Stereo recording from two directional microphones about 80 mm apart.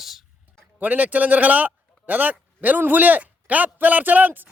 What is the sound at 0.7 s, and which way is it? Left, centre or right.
Speech, centre.